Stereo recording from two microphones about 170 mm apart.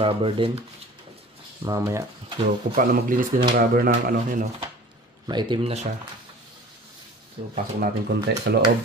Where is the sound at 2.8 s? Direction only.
55° right (ahead or behind).